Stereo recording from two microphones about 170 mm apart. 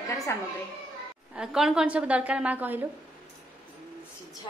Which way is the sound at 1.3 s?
5° right (ahead or behind).